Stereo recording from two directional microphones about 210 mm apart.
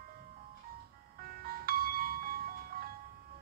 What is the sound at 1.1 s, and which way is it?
Music, 45° right (ahead or behind).